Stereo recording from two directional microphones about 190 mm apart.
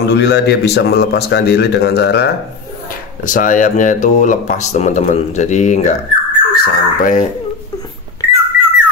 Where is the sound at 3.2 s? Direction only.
45° left (ahead or behind).